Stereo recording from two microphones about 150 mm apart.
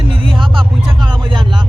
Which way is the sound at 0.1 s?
35° right (ahead or behind).